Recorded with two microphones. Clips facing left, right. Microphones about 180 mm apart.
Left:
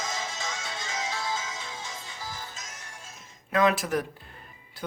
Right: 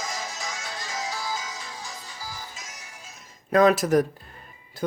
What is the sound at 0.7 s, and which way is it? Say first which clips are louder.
Music: right 2 dB; centre (ahead or behind).